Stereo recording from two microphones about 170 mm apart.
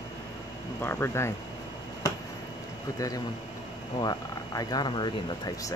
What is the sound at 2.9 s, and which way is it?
Speech, 20° left (ahead or behind).